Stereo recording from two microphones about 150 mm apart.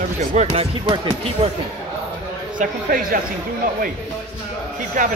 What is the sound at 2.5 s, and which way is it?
Speech, 65° right (ahead or behind).